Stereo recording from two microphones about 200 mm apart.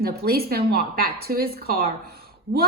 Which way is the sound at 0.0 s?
50° right (ahead or behind).